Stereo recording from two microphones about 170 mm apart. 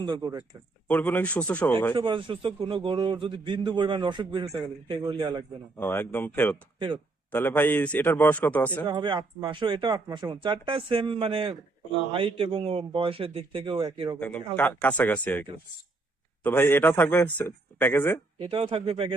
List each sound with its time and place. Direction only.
0.0 s speech: 25° right (ahead or behind)
0.9 s a man's voice: 10° left (ahead or behind)
2.0 s speech: 30° right (ahead or behind)
5.8 s a man's voice: 10° left (ahead or behind)
6.7 s speech: 30° right (ahead or behind)
7.3 s a man's voice: 10° left (ahead or behind)
8.9 s a man's voice: 25° right (ahead or behind)
14.2 s a man's voice: 10° left (ahead or behind)
18.3 s a man's voice: 35° right (ahead or behind)